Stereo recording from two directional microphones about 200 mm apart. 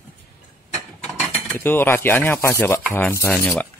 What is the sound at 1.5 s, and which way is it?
Stir, 10° left (ahead or behind).